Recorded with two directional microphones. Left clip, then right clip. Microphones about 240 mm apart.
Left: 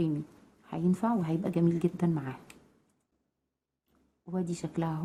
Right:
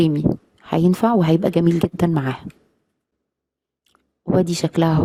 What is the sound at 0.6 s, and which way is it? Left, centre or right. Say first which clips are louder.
Speech: right 14 dB; right.